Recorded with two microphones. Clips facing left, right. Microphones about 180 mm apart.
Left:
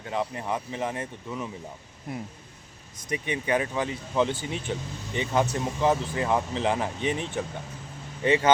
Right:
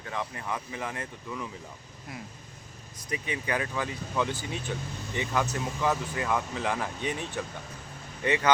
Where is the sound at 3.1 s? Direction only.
20° left (ahead or behind).